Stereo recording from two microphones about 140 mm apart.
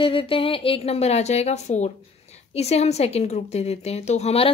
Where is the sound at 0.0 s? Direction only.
40° left (ahead or behind).